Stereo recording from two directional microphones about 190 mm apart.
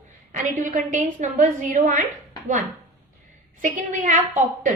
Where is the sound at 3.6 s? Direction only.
40° right (ahead or behind).